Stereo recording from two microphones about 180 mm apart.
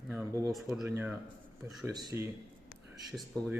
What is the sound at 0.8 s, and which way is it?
Speech, 10° right (ahead or behind).